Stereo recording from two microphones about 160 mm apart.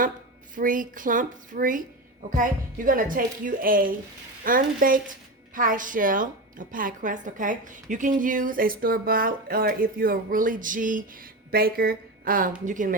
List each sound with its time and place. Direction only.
0.5 s a woman's voice: 55° right (ahead or behind)
11.5 s a woman's voice: 70° right (ahead or behind); by 12.9 s 55° right (ahead or behind)